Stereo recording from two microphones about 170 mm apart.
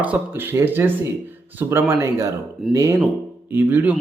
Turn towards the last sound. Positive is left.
turn(degrees=-10)  # may be behind; listen again after turning